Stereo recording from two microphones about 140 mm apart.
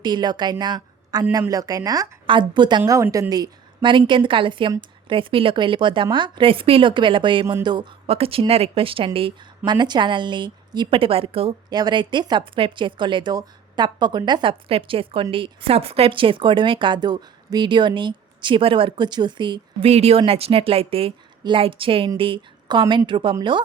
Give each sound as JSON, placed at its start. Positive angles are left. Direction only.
{"t": 0.0, "sound": "speech", "side_deg": -30}
{"t": 0.6, "sound": "a sound", "side_deg": -30}
{"t": 1.3, "sound": "speech", "side_deg": -25}
{"t": 8.0, "sound": "speech", "side_deg": -45}
{"t": 11.7, "sound": "speech", "side_deg": -30}
{"t": 19.9, "sound": "speech", "side_deg": -45}